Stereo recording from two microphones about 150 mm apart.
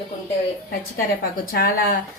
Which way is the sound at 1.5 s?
75° left (ahead or behind).